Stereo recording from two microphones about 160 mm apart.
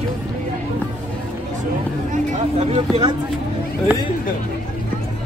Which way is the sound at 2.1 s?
45° right (ahead or behind).